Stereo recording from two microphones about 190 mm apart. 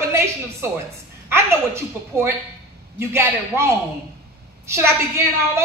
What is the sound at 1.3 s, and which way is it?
A woman's voice, 15° right (ahead or behind).